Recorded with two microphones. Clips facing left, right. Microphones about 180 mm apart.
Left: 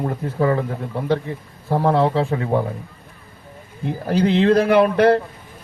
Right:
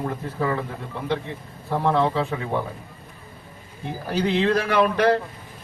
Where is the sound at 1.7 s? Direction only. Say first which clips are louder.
Left 4 dB; 35° left (ahead or behind).